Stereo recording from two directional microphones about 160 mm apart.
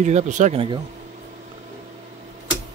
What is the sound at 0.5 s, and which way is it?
Speech, 30° right (ahead or behind).